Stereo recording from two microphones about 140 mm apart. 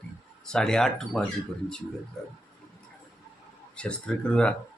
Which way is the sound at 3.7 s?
10° left (ahead or behind).